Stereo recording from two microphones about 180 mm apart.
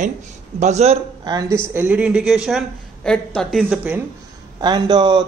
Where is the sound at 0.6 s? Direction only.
40° right (ahead or behind).